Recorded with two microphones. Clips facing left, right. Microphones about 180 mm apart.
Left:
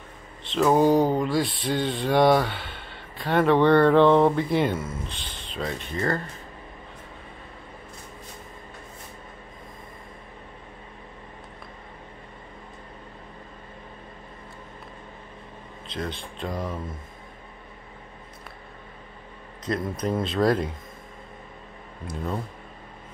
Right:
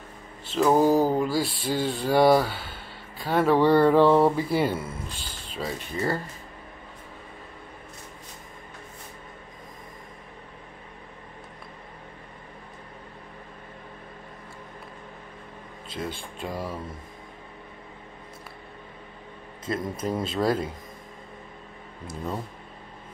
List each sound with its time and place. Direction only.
0.4 s speech: 5° right (ahead or behind)
15.9 s speech: 5° right (ahead or behind)
19.6 s speech: 5° right (ahead or behind)